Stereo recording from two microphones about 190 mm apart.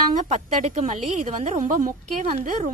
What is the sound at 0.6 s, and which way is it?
A woman's voice, 40° right (ahead or behind).